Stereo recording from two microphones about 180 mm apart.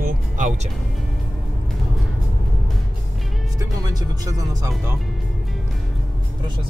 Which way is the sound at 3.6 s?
20° right (ahead or behind).